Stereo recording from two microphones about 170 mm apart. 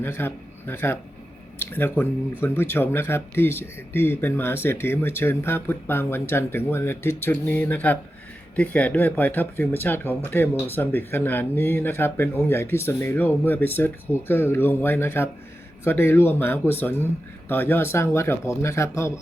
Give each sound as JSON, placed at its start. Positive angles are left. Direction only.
{"t": 0.0, "sound": "a man's voice", "side_deg": 10}